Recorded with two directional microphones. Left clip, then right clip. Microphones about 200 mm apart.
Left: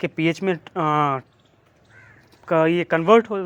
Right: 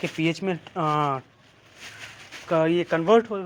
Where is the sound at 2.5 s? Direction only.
35° left (ahead or behind).